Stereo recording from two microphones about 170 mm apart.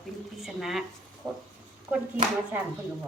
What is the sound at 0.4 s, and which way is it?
Speech, centre (ahead or behind).